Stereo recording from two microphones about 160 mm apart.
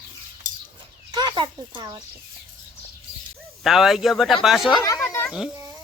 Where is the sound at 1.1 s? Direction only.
25° right (ahead or behind).